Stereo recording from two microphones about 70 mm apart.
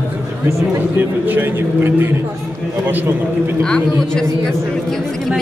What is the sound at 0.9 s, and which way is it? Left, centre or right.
A man's voice, right.